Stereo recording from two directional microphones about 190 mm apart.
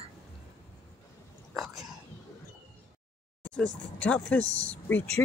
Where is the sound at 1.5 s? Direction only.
Centre (ahead or behind).